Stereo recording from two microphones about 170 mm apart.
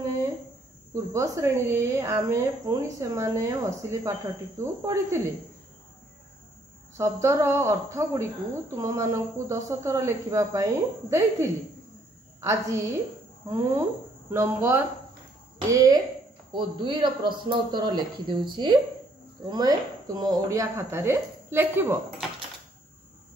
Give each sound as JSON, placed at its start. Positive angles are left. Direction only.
{"t": 0.9, "sound": "speech", "side_deg": -20}
{"t": 7.0, "sound": "speech", "side_deg": -20}